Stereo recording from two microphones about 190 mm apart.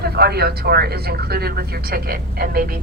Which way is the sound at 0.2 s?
55° right (ahead or behind).